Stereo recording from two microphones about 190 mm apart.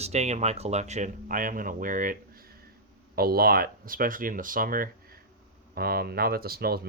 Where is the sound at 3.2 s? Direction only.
55° right (ahead or behind).